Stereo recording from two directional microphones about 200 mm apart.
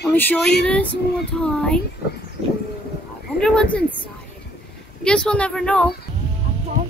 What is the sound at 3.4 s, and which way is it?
Speech, 5° left (ahead or behind).